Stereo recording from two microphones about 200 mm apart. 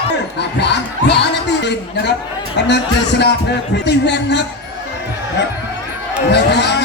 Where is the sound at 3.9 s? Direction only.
60° left (ahead or behind).